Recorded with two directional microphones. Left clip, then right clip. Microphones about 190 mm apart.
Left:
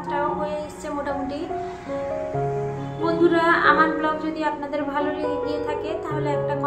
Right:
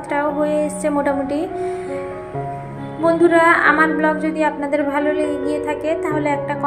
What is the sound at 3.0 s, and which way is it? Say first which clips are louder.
A woman's voice: right 6 dB; 30° right (ahead or behind).